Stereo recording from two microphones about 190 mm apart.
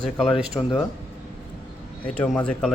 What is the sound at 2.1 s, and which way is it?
Speech, 5° left (ahead or behind).